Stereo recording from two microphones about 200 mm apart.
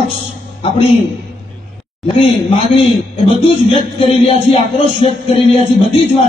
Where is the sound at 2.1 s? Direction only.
30° left (ahead or behind).